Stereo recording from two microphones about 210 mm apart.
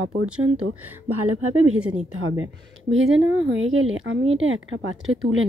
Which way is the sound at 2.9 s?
60° right (ahead or behind).